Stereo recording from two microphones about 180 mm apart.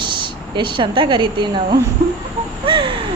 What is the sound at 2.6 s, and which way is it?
Speech, 25° right (ahead or behind).